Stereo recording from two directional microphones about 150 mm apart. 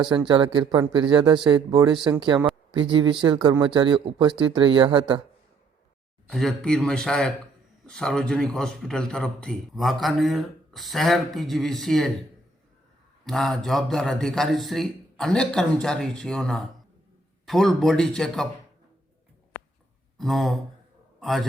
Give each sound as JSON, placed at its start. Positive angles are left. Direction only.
{"t": 0.3, "sound": "speech", "side_deg": -30}
{"t": 6.3, "sound": "a man's voice", "side_deg": 5}
{"t": 13.2, "sound": "a man's voice", "side_deg": 0}
{"t": 20.1, "sound": "a man's voice", "side_deg": 0}